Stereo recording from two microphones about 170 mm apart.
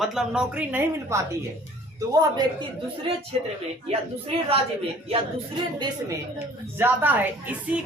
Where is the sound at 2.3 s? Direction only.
25° right (ahead or behind).